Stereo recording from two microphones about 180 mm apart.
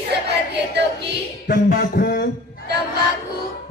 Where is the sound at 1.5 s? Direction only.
55° left (ahead or behind).